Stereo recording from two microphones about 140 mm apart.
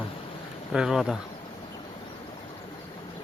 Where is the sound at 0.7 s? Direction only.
5° right (ahead or behind).